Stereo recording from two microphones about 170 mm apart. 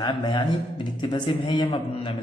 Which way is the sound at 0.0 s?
25° left (ahead or behind).